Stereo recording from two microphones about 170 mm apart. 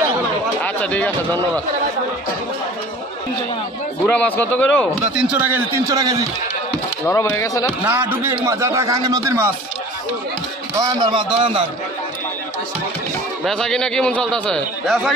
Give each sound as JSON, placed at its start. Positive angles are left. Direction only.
{"t": 0.6, "sound": "a sound", "side_deg": 10}
{"t": 4.0, "sound": "speech", "side_deg": 5}
{"t": 5.1, "sound": "a man's voice", "side_deg": -5}
{"t": 7.1, "sound": "speech", "side_deg": 15}
{"t": 7.8, "sound": "a man's voice", "side_deg": -10}
{"t": 10.8, "sound": "a man's voice", "side_deg": -25}
{"t": 13.4, "sound": "a man's voice", "side_deg": 5}